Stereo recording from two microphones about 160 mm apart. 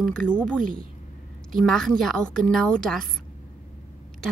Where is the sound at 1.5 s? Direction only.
Centre (ahead or behind).